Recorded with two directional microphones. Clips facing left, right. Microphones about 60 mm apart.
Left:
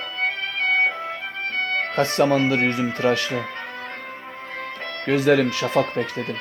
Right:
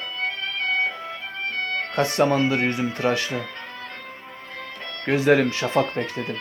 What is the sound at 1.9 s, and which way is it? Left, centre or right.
Speech, right.